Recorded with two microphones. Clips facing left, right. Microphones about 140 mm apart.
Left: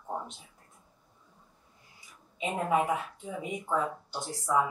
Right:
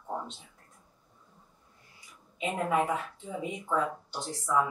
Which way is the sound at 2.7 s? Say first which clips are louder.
Left 2 dB; 10° left (ahead or behind).